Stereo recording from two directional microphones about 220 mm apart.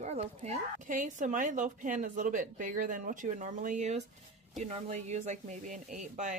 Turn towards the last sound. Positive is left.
turn(degrees=-35)  # may be behind; listen again after turning